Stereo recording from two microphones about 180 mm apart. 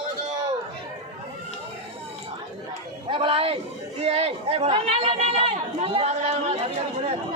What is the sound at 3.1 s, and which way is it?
Speech, 30° right (ahead or behind).